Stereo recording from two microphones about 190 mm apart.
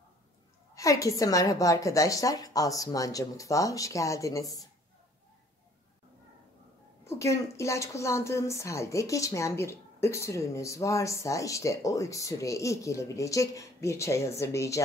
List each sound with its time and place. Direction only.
0.7 s a woman's voice: 15° left (ahead or behind)
7.1 s a woman's voice: 15° left (ahead or behind)